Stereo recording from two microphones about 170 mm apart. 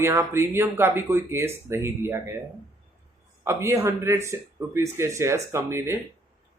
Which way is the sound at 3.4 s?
15° right (ahead or behind).